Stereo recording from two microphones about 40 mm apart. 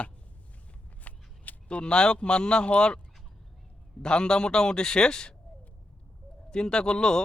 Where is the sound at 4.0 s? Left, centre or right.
Left.